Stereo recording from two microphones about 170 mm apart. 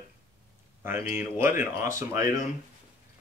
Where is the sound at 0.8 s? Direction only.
15° right (ahead or behind).